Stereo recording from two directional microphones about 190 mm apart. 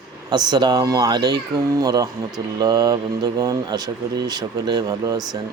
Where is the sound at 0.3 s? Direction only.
25° right (ahead or behind).